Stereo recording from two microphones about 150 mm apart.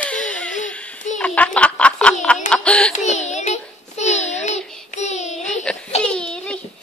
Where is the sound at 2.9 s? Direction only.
50° left (ahead or behind).